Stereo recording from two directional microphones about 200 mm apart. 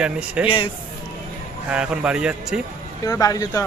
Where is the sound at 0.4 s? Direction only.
25° left (ahead or behind).